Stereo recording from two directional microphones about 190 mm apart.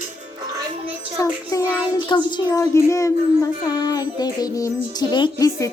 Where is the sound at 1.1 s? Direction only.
15° left (ahead or behind).